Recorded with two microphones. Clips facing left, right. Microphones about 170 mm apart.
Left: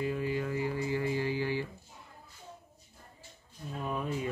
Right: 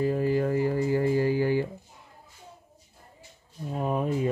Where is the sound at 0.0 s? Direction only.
40° right (ahead or behind).